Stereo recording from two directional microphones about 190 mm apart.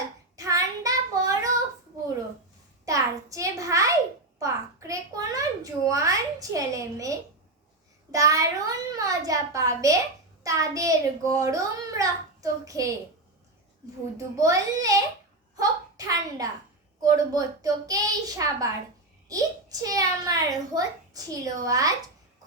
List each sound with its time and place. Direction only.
0.3 s child singing: 15° right (ahead or behind)
2.8 s a sound: 15° right (ahead or behind)
10.4 s a child's voice: 15° right (ahead or behind)
14.2 s a child's voice: 15° right (ahead or behind)
15.5 s a sound: 20° right (ahead or behind)
17.0 s a child's voice: 20° right (ahead or behind)